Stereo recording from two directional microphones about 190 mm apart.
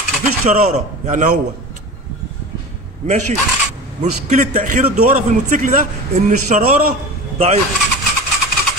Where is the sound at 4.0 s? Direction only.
40° right (ahead or behind).